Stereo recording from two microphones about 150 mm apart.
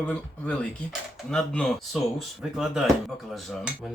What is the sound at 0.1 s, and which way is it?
Speech, 5° left (ahead or behind).